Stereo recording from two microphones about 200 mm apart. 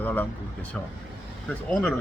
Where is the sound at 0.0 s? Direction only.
10° left (ahead or behind).